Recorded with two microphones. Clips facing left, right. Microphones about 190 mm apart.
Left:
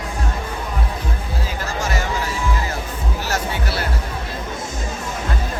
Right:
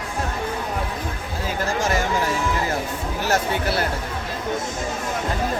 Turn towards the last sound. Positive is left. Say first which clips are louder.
# right 3 dB
turn(degrees=-50)  # may be behind; listen again after turning